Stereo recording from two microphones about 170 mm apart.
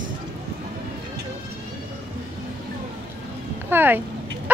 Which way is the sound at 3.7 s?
10° right (ahead or behind).